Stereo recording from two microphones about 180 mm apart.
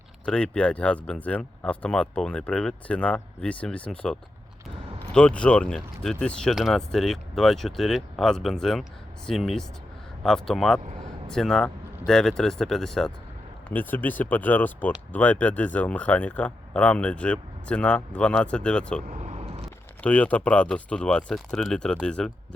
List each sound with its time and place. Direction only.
0.3 s speech: 5° left (ahead or behind)
19.0 s vehicle: 40° right (ahead or behind)
20.0 s speech: 10° left (ahead or behind)